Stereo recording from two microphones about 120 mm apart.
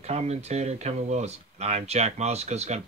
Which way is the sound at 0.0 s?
65° right (ahead or behind).